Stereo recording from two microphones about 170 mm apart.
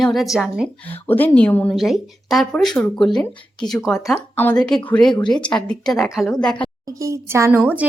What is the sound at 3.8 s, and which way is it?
Speech, centre (ahead or behind).